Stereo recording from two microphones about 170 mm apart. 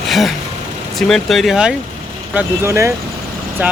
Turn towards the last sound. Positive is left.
turn(degrees=-10)  # may be behind; listen again after turning